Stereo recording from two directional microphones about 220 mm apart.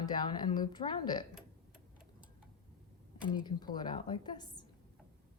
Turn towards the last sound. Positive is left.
turn(degrees=20)  # may be behind; listen again after turning